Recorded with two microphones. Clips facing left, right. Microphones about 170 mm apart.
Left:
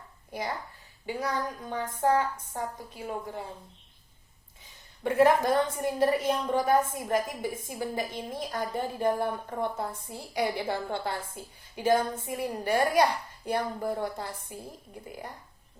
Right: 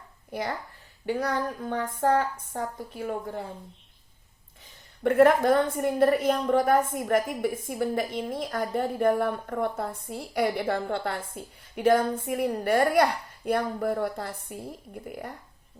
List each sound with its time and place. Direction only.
1.2 s a woman's voice: 60° right (ahead or behind)
5.0 s a woman's voice: 55° right (ahead or behind)